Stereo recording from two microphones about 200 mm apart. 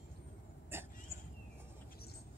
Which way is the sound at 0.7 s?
10° right (ahead or behind).